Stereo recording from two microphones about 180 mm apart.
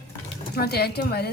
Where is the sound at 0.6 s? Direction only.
60° left (ahead or behind).